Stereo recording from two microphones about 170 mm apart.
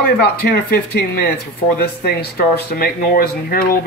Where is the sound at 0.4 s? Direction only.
65° left (ahead or behind).